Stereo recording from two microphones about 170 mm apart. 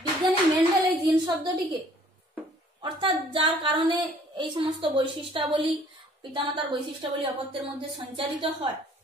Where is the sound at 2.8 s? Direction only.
30° right (ahead or behind).